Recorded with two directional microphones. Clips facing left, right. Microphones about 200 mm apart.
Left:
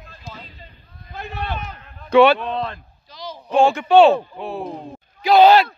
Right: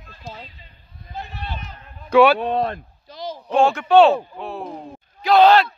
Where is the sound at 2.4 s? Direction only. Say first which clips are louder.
Right 4 dB; 50° right (ahead or behind).